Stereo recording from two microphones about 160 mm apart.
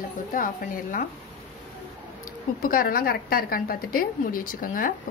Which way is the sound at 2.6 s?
65° left (ahead or behind).